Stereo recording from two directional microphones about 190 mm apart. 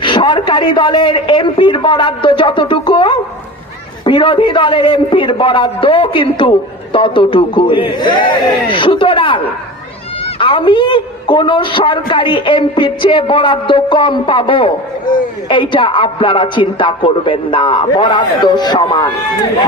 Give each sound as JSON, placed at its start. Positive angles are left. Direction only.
{"t": 0.0, "sound": "a man's voice", "side_deg": 25}
{"t": 10.4, "sound": "a man's voice", "side_deg": 25}